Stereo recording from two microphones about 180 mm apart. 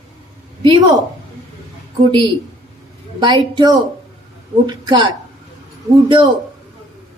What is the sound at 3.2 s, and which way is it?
A woman's voice, 25° right (ahead or behind).